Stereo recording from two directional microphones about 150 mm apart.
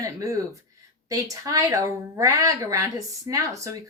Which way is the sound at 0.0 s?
20° right (ahead or behind).